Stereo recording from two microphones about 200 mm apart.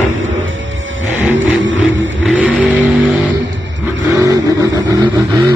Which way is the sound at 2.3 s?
5° right (ahead or behind).